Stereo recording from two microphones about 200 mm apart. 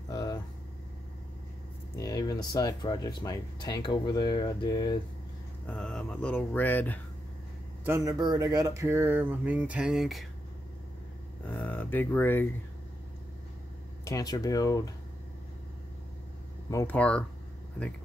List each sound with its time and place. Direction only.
0.1 s vehicle: 20° left (ahead or behind)
2.0 s speech: 15° left (ahead or behind)
5.7 s speech: 5° left (ahead or behind)
7.8 s speech: 15° right (ahead or behind)
11.5 s speech: 5° left (ahead or behind)
14.0 s speech: 15° left (ahead or behind)
16.7 s speech: 10° left (ahead or behind)